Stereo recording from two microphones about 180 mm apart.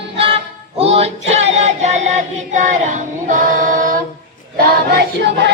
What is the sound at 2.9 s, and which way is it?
Singing, 45° right (ahead or behind).